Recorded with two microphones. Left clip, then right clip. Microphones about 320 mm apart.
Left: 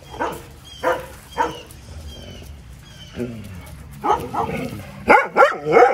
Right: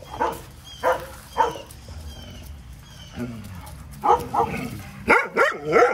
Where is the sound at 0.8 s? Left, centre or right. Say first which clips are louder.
Left 1 dB; right.